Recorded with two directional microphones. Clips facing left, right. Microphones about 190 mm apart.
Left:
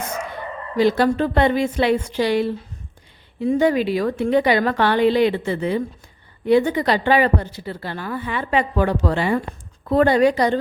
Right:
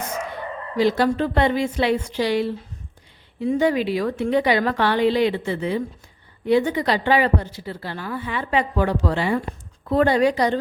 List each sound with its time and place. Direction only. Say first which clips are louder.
0.8 s speech: left 2 dB; 55° left (ahead or behind)